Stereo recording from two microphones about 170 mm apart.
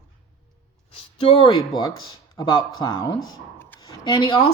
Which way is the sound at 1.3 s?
30° left (ahead or behind).